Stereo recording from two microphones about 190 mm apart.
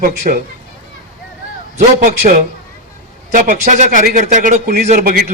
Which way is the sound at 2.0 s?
45° right (ahead or behind).